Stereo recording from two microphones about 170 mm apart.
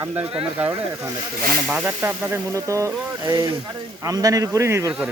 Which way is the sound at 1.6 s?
5° right (ahead or behind).